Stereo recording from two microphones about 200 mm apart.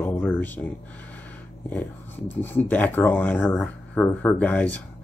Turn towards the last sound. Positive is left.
turn(degrees=5)  # may be behind; listen again after turning